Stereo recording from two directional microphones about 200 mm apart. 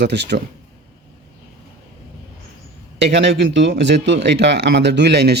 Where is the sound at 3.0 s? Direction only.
60° right (ahead or behind).